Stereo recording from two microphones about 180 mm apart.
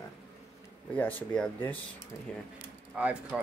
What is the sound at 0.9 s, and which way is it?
Speech, 10° left (ahead or behind).